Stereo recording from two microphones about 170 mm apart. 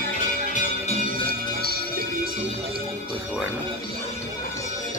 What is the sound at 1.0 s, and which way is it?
Music, 60° right (ahead or behind).